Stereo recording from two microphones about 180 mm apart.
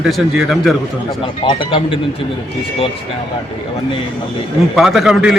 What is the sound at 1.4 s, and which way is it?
Speech, 30° left (ahead or behind).